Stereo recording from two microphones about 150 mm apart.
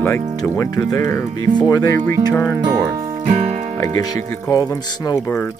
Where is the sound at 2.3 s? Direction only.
15° left (ahead or behind).